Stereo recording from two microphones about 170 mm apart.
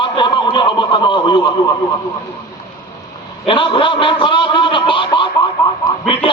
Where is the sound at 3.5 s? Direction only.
30° left (ahead or behind).